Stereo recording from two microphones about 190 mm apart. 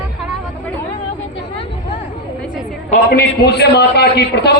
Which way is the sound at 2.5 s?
45° left (ahead or behind).